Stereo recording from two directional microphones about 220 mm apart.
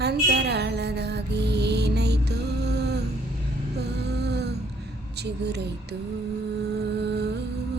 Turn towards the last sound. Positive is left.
turn(degrees=-50)  # may be behind; listen again after turning